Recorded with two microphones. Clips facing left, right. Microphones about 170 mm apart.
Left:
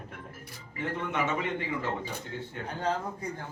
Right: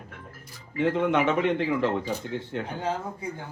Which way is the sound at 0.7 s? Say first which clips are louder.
Right 9 dB; 90° right.